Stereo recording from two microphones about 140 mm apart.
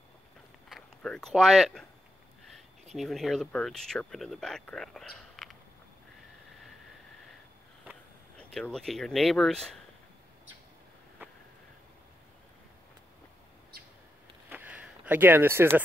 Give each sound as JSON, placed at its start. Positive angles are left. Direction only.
{"t": 0.7, "sound": "speech", "side_deg": 5}
{"t": 3.0, "sound": "speech", "side_deg": 0}
{"t": 8.4, "sound": "speech", "side_deg": 5}
{"t": 14.5, "sound": "a sound", "side_deg": -10}